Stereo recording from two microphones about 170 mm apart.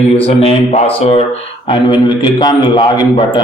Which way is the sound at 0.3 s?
40° left (ahead or behind).